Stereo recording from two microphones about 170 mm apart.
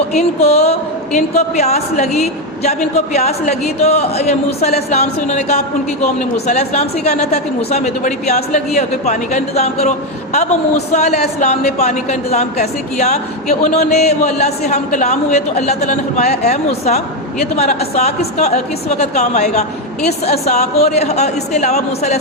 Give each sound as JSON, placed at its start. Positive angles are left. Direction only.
{"t": 0.1, "sound": "a man's voice", "side_deg": 40}